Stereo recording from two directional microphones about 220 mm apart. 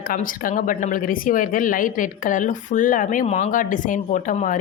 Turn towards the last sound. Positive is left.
turn(degrees=35)  # may be behind; listen again after turning